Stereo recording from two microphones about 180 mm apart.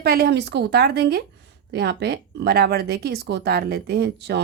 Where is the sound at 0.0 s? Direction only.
60° right (ahead or behind).